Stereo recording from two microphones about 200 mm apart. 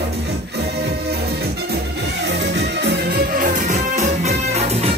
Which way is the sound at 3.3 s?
40° right (ahead or behind).